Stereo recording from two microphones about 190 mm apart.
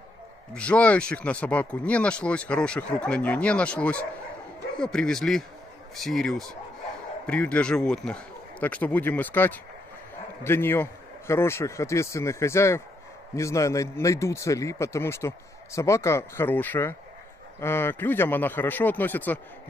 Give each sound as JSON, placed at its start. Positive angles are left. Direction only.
{"t": 0.6, "sound": "a man's voice", "side_deg": 5}